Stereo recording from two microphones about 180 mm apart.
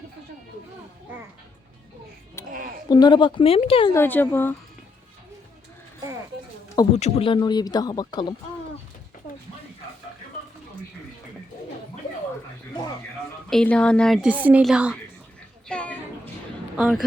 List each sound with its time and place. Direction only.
2.9 s speech: 25° left (ahead or behind)
3.9 s speech: 10° left (ahead or behind)
6.9 s speech: 35° left (ahead or behind)
13.5 s a woman's voice: 5° left (ahead or behind)
15.7 s a sound: 10° left (ahead or behind)
16.7 s speech: 5° right (ahead or behind)